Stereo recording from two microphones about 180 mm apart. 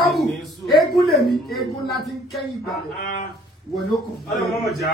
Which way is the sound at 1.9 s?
Centre (ahead or behind).